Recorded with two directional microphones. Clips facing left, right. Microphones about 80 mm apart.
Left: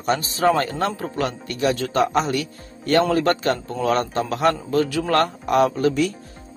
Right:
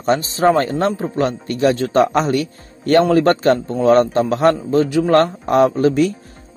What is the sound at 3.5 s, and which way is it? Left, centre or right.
A man's voice, right.